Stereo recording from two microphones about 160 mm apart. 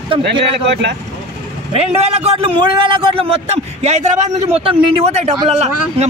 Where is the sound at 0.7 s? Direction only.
90° right.